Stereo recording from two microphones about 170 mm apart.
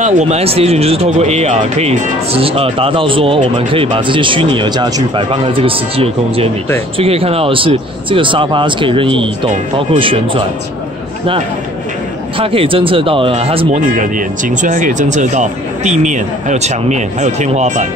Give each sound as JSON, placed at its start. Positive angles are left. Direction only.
{"t": 0.0, "sound": "speech", "side_deg": -40}
{"t": 12.4, "sound": "speech", "side_deg": -30}
{"t": 13.7, "sound": "speech", "side_deg": -50}